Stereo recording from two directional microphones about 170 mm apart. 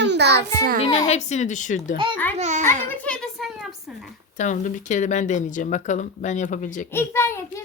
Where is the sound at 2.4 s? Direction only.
45° right (ahead or behind).